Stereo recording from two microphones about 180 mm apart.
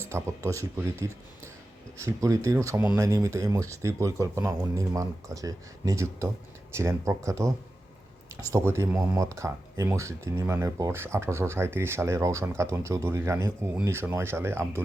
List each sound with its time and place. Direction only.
0.0 s speech: 15° right (ahead or behind)